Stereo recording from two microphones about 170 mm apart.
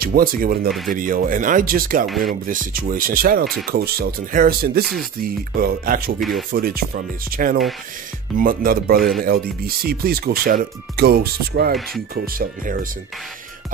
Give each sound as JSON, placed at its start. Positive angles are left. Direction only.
{"t": 0.0, "sound": "speech", "side_deg": -60}
{"t": 2.0, "sound": "speech", "side_deg": 0}
{"t": 2.4, "sound": "speech", "side_deg": -55}